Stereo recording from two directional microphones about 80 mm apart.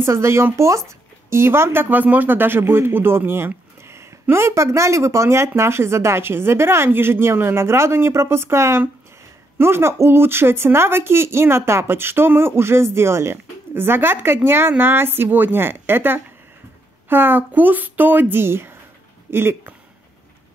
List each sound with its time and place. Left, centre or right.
0.0 s speech: right